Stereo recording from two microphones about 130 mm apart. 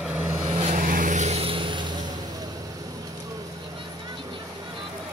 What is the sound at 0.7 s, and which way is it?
Vehicle, 90° right.